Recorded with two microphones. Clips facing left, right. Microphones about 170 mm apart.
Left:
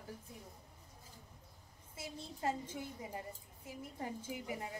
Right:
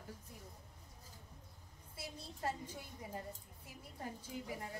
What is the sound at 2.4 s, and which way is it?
A woman's voice, 20° left (ahead or behind).